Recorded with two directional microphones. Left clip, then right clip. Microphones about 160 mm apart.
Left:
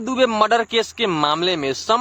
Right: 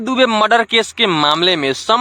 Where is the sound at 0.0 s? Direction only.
40° right (ahead or behind).